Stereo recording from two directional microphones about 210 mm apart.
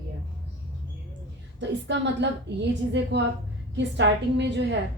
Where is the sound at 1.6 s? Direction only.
55° right (ahead or behind).